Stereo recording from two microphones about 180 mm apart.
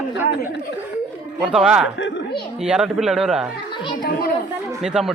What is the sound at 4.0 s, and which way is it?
Speech, 55° left (ahead or behind).